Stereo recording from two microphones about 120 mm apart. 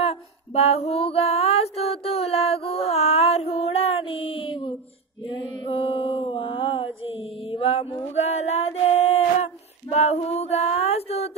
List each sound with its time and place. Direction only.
0.0 s female singing: 55° left (ahead or behind)
5.2 s mantra: 45° left (ahead or behind)
8.1 s female singing: 65° left (ahead or behind)